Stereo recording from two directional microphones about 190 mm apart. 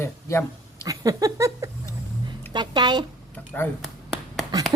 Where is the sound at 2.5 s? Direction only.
25° right (ahead or behind).